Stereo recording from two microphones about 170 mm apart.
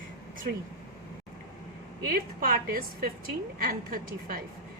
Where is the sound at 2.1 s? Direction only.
60° right (ahead or behind).